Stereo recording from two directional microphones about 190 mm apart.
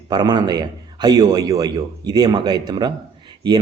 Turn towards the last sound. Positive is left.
turn(degrees=-25)  # may be behind; listen again after turning